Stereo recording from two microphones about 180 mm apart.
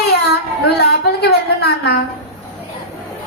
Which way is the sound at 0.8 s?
65° left (ahead or behind).